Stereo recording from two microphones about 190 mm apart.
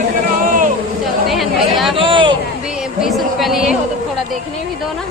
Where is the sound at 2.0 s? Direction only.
25° right (ahead or behind).